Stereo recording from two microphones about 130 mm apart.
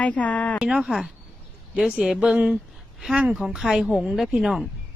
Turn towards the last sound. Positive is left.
turn(degrees=0)  # may be behind; listen again after turning